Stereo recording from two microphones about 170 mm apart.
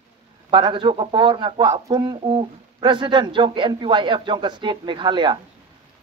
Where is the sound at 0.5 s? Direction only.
30° right (ahead or behind).